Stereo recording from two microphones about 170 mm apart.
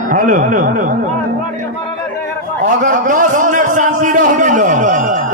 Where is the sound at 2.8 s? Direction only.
50° right (ahead or behind).